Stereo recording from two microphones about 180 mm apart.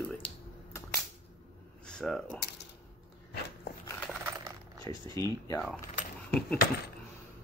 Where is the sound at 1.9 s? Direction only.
5° left (ahead or behind).